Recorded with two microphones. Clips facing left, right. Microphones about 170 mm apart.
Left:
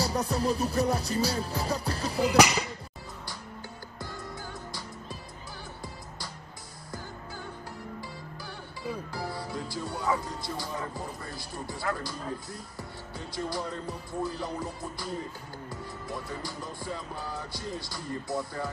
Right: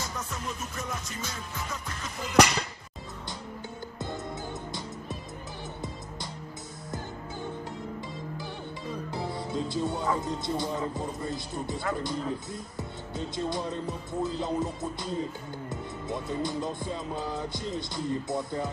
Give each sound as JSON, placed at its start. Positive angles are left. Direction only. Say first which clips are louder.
{"t": 0.0, "sound": "music", "louder": "left 9 dB", "side_deg": 35}
{"t": 2.3, "sound": "speech", "louder": "right 1 dB", "side_deg": 5}
{"t": 9.1, "sound": "music", "louder": "right 3 dB", "side_deg": -20}
{"t": 10.1, "sound": "speech", "louder": "right 4 dB", "side_deg": -20}